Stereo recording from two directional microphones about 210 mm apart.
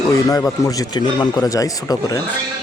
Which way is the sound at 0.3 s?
15° left (ahead or behind).